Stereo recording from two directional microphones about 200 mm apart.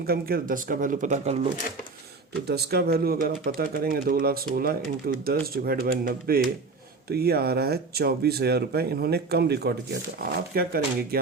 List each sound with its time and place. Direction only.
0.0 s speech: 50° right (ahead or behind)
2.5 s speech: 55° right (ahead or behind)